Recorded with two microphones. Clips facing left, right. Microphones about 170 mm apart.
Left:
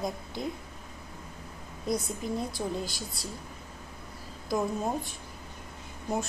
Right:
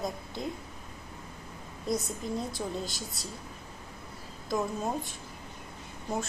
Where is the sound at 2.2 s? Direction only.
25° right (ahead or behind).